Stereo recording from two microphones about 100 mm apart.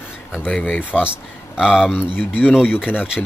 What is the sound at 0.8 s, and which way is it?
Speech, 10° right (ahead or behind).